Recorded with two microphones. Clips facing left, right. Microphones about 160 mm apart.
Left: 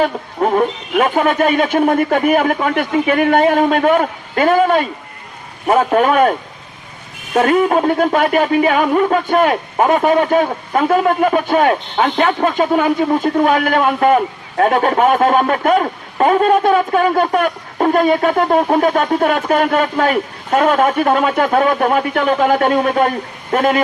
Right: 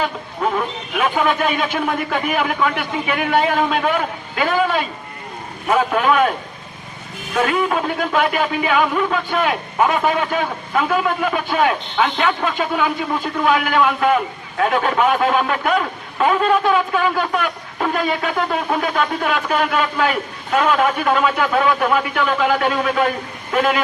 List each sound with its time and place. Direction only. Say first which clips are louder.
0.0 s speech: left 5 dB; 45° left (ahead or behind)
7.3 s speech: left 6 dB; 45° left (ahead or behind)